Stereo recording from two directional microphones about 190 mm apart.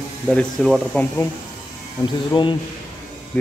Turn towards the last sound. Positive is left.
turn(degrees=5)  # may be behind; listen again after turning